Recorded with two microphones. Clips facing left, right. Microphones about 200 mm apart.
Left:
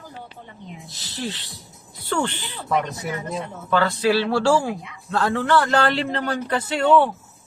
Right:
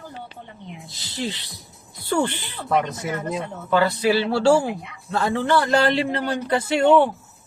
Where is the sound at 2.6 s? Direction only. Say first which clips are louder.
Right 2 dB; 20° right (ahead or behind).